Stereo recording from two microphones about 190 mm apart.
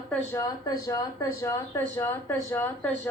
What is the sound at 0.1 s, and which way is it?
Speech, 15° left (ahead or behind).